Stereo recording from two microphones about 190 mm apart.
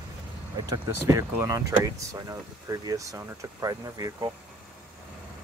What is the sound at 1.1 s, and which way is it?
Speech, 15° right (ahead or behind).